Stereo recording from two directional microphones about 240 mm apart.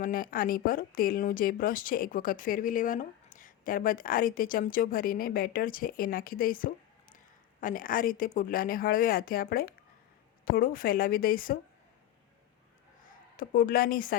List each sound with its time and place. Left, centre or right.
0.0 s speech: left
13.3 s speech: left